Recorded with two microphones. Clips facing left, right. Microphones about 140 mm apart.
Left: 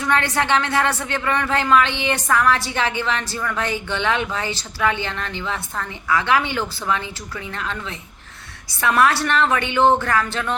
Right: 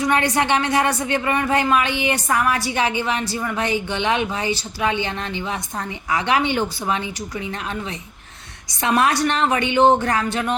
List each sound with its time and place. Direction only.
0.0 s a woman's voice: 15° right (ahead or behind)